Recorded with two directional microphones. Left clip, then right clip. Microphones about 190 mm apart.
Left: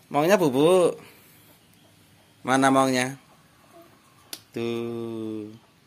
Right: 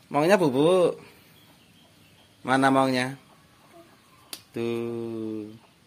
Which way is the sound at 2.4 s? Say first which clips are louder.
Left 1 dB; 5° left (ahead or behind).